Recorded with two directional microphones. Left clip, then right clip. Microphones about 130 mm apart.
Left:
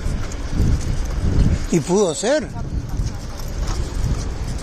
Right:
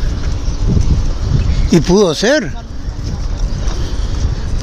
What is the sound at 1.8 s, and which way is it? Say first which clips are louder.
Speech: right 6 dB; 90° right.